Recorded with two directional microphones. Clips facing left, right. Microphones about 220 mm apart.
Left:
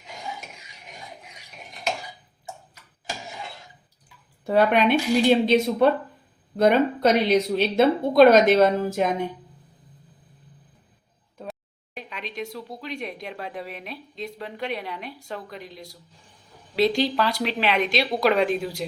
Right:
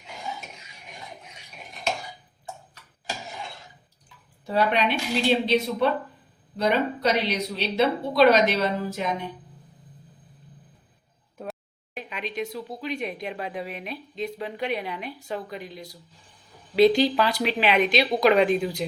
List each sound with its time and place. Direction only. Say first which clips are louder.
4.4 s a woman's voice: left 4 dB; 50° left (ahead or behind)
11.9 s speech: right 2 dB; centre (ahead or behind)